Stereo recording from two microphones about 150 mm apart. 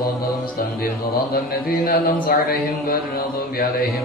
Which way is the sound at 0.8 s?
80° left.